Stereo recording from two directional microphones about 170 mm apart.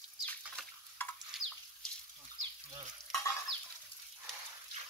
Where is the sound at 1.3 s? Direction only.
5° right (ahead or behind).